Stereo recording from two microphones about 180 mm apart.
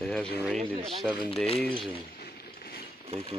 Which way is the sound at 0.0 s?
5° left (ahead or behind).